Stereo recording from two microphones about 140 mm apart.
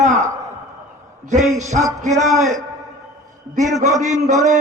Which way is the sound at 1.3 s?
55° right (ahead or behind).